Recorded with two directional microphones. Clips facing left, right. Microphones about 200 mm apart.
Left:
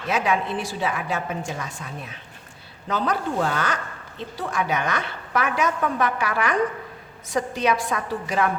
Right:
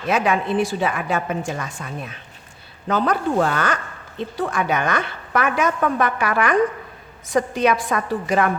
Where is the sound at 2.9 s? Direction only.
55° right (ahead or behind).